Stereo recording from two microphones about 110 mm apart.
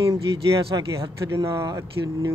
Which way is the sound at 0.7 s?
35° right (ahead or behind).